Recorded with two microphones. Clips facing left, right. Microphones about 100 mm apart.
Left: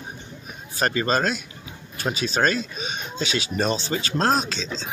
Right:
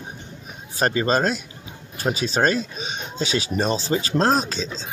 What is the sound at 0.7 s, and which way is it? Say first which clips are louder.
Speech: right 2 dB; 30° right (ahead or behind).